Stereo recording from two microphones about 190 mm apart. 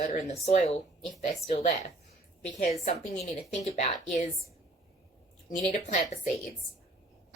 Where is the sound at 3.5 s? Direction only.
35° left (ahead or behind).